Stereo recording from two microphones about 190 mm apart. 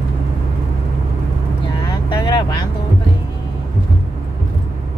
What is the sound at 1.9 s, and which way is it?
Vehicle, 20° left (ahead or behind).